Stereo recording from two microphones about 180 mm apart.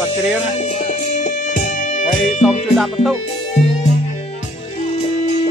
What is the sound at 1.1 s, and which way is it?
Music, 45° left (ahead or behind).